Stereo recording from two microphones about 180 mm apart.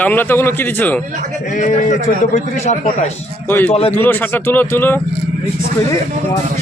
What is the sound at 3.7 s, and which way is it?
Speech, 35° left (ahead or behind).